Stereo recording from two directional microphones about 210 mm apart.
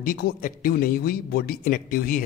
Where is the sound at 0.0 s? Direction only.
40° left (ahead or behind).